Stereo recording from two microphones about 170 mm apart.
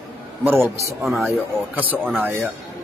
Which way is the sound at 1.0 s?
Centre (ahead or behind).